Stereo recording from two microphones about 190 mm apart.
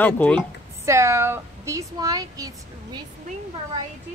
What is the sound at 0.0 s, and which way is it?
Speech, 10° left (ahead or behind).